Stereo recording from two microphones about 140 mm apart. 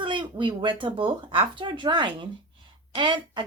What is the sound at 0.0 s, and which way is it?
A woman's voice, 35° right (ahead or behind).